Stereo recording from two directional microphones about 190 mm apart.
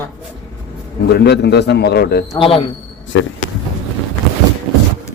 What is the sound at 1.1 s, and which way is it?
A man's voice, 60° left (ahead or behind).